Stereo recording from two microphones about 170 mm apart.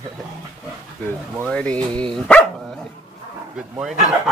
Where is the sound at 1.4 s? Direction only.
5° left (ahead or behind).